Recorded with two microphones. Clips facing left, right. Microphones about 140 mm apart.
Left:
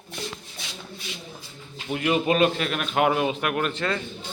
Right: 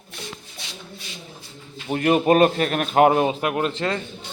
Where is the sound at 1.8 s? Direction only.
45° right (ahead or behind).